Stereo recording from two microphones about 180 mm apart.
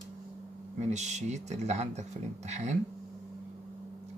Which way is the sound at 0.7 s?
40° right (ahead or behind).